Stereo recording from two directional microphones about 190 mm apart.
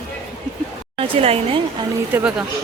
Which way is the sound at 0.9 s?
30° right (ahead or behind).